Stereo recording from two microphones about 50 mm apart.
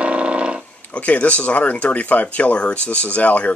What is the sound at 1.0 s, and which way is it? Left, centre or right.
Speech, left.